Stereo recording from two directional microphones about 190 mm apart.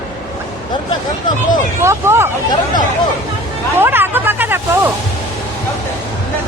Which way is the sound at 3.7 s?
10° right (ahead or behind).